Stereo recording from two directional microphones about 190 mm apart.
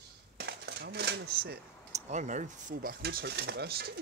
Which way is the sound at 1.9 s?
35° right (ahead or behind).